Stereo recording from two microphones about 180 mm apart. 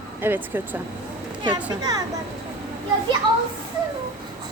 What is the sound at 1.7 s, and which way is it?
Speech, 20° right (ahead or behind).